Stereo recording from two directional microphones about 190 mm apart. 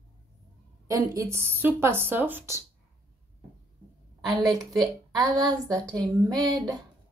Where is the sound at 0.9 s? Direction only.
15° right (ahead or behind).